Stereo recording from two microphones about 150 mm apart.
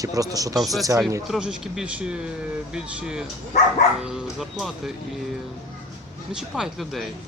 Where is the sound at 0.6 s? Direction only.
Centre (ahead or behind).